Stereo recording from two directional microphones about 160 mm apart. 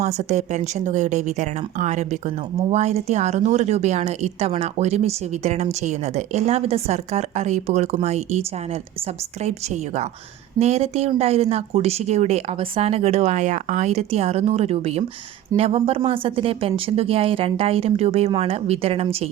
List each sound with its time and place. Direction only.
0.0 s speech: 45° right (ahead or behind)
10.6 s speech: 40° right (ahead or behind)